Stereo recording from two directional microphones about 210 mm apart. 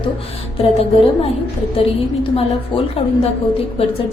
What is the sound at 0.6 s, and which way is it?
Speech, 30° left (ahead or behind).